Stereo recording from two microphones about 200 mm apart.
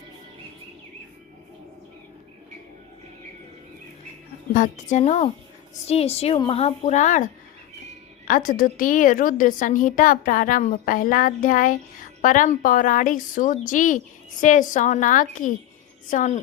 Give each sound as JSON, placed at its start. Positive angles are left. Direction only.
{"t": 4.5, "sound": "a woman's voice", "side_deg": 40}